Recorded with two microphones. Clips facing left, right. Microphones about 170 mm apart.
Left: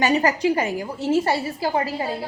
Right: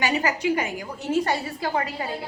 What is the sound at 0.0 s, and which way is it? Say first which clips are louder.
A woman's voice: left 5 dB; 35° left (ahead or behind).